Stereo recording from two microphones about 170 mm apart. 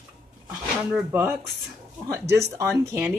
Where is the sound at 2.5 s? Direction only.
15° right (ahead or behind).